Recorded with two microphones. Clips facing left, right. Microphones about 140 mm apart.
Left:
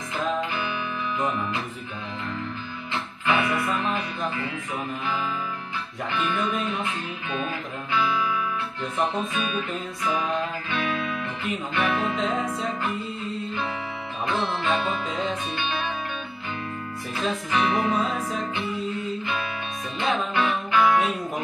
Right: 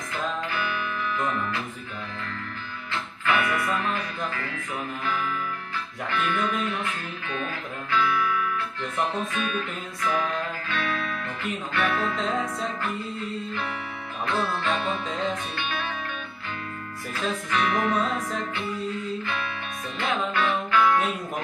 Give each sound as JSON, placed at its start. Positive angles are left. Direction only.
{"t": 2.9, "sound": "speech", "side_deg": 20}
{"t": 6.1, "sound": "speech", "side_deg": 20}
{"t": 7.9, "sound": "music", "side_deg": 15}
{"t": 14.2, "sound": "speech", "side_deg": 20}
{"t": 17.5, "sound": "speech", "side_deg": 20}
{"t": 20.3, "sound": "music", "side_deg": 20}